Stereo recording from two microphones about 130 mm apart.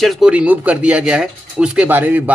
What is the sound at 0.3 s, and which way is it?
Speech, 10° right (ahead or behind).